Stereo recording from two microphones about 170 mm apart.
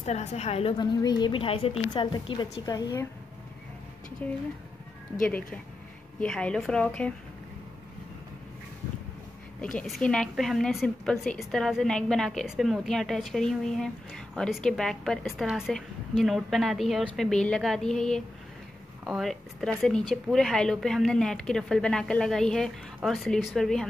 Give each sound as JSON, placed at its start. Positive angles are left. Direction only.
{"t": 0.0, "sound": "a woman's voice", "side_deg": 40}
{"t": 4.2, "sound": "a woman's voice", "side_deg": 10}
{"t": 9.6, "sound": "a woman's voice", "side_deg": 5}